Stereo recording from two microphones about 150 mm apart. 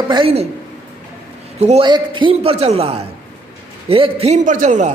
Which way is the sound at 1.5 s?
45° right (ahead or behind).